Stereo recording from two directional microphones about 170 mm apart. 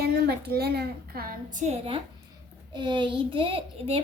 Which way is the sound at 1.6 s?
35° right (ahead or behind).